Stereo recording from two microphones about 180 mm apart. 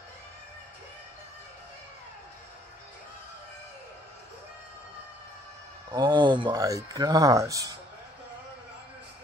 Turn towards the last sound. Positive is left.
turn(degrees=-20)  # may be behind; listen again after turning